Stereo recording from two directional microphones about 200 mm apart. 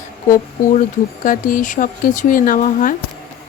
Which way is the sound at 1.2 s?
45° left (ahead or behind).